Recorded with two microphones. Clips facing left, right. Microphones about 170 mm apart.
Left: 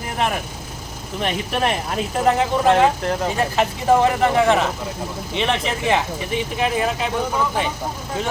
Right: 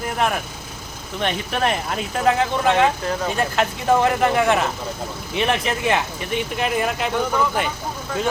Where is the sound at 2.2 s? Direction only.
Centre (ahead or behind).